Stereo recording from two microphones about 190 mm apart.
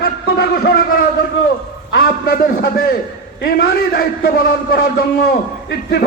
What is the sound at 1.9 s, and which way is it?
A man's voice, 50° left (ahead or behind).